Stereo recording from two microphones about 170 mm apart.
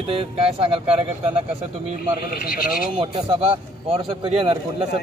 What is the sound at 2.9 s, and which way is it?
Speech, 30° right (ahead or behind).